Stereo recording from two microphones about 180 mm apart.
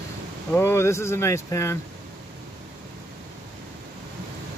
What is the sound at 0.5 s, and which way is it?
Speech, 15° left (ahead or behind).